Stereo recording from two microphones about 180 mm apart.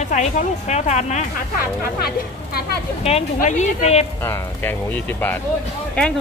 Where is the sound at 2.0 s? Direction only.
60° left (ahead or behind).